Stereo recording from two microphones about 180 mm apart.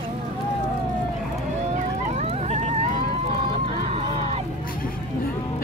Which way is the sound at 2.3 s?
35° right (ahead or behind).